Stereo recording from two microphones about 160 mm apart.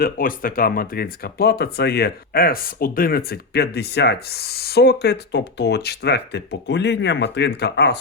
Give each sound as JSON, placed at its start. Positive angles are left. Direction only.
{"t": 0.0, "sound": "speech", "side_deg": 60}